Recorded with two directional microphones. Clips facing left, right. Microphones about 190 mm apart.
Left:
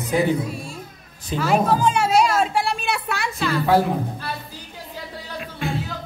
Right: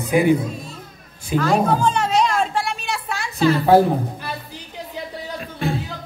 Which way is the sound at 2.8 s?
60° left (ahead or behind).